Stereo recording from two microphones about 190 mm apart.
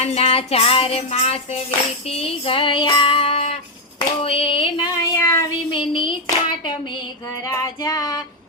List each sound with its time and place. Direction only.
0.0 s music: 30° left (ahead or behind)
2.0 s female singing: 30° left (ahead or behind)
3.9 s a sound: 30° left (ahead or behind)
5.7 s female singing: 25° left (ahead or behind)